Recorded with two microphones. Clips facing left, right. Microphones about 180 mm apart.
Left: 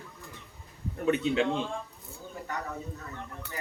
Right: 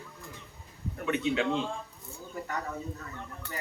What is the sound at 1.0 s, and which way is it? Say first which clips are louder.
Speech: left 3 dB; 35° left (ahead or behind).